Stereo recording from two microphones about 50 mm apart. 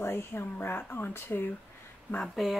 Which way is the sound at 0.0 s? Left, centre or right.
Left.